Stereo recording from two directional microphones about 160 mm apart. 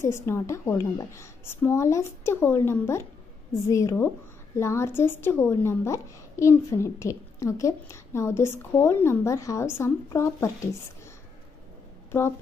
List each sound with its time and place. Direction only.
0.0 s a woman's voice: 15° left (ahead or behind)